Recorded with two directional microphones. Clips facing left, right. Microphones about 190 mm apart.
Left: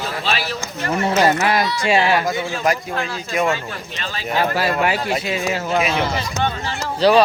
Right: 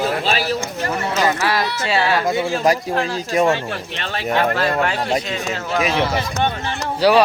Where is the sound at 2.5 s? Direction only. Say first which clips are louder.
Right 3 dB; 35° right (ahead or behind).